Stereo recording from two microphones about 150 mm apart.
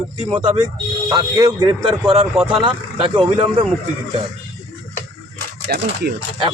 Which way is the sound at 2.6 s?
35° right (ahead or behind).